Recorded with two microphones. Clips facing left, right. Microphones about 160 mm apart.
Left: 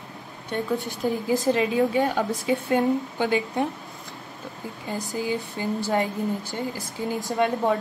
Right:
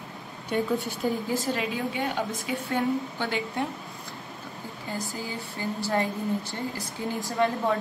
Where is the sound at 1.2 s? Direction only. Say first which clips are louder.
Left 6 dB; 15° left (ahead or behind).